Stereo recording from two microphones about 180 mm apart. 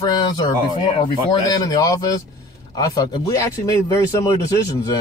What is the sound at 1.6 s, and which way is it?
Speech, 20° left (ahead or behind).